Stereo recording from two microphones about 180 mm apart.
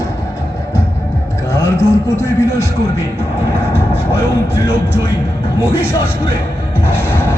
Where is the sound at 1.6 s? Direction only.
15° left (ahead or behind).